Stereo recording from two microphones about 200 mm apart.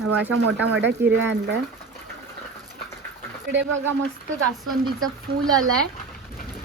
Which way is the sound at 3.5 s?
65° right (ahead or behind).